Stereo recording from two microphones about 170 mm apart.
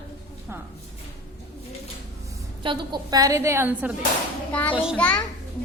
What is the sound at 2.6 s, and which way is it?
A woman's voice, 25° right (ahead or behind).